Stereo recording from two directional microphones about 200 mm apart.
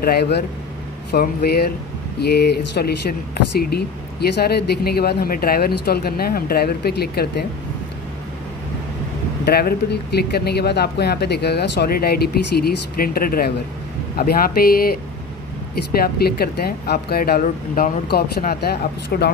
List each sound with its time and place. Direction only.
0.0 s speech: 50° left (ahead or behind)
9.4 s speech: 50° left (ahead or behind)